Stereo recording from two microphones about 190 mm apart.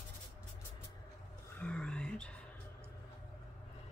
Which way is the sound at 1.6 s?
5° left (ahead or behind).